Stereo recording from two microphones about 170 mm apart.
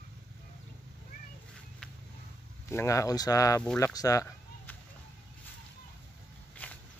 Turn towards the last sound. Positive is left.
turn(degrees=10)  # may be behind; listen again after turning